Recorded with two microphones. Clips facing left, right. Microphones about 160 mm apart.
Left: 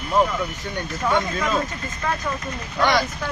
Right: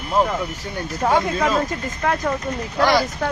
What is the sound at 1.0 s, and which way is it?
Speech, 40° right (ahead or behind).